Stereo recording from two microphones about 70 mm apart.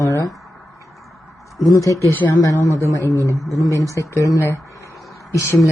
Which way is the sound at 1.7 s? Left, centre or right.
Left.